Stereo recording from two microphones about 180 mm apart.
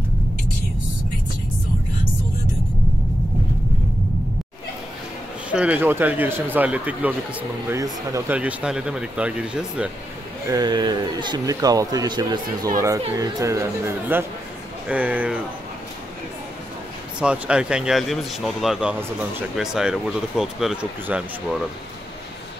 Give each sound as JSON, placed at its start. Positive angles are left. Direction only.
{"t": 5.5, "sound": "speech", "side_deg": -5}
{"t": 10.5, "sound": "speech", "side_deg": -25}
{"t": 17.2, "sound": "speech", "side_deg": -5}